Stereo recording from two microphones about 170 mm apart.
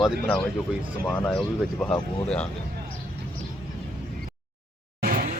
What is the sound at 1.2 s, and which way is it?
Speech, 5° left (ahead or behind).